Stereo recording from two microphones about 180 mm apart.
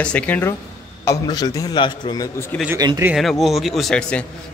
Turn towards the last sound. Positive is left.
turn(degrees=5)  # may be behind; listen again after turning